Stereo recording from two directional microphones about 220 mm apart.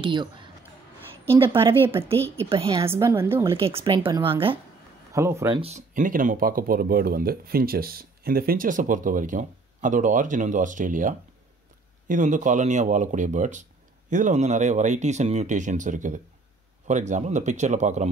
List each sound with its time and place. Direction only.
0.0 s speech: 20° right (ahead or behind)
1.5 s speech: 25° right (ahead or behind)
2.1 s speech: 10° left (ahead or behind)
2.5 s speech: 25° right (ahead or behind)
2.9 s a woman's voice: 10° right (ahead or behind)
3.5 s speech: 25° right (ahead or behind)
5.1 s a woman's voice: 15° right (ahead or behind)
5.6 s speech: 30° right (ahead or behind)